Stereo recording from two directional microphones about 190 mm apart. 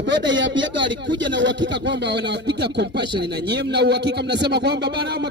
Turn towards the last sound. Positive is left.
turn(degrees=-65)  # may be behind; listen again after turning